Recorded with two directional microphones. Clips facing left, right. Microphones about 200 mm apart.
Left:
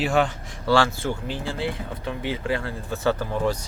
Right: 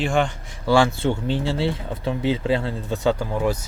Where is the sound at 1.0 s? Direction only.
25° right (ahead or behind).